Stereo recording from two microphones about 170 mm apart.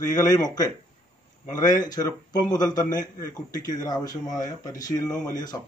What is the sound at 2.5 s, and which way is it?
Speech, 25° left (ahead or behind).